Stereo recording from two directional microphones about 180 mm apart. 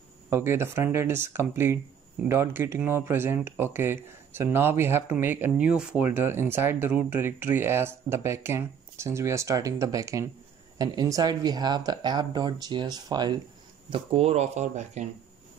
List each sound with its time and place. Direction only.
0.3 s speech: 15° right (ahead or behind); by 15.0 s 40° right (ahead or behind)